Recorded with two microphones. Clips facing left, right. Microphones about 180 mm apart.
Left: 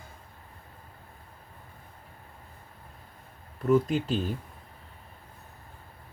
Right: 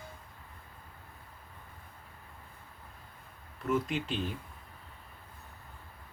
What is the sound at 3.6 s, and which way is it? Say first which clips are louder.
Speech: left 8 dB; 35° left (ahead or behind).